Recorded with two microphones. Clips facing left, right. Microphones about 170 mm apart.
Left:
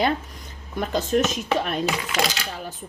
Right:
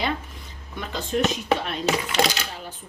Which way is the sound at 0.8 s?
45° left (ahead or behind).